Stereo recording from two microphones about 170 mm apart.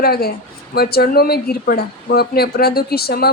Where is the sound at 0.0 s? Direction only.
65° left (ahead or behind).